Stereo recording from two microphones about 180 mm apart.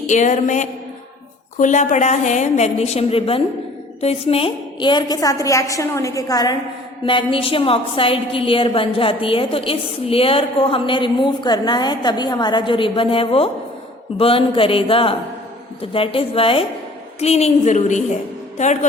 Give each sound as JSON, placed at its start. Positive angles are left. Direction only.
{"t": 0.1, "sound": "a woman's voice", "side_deg": 40}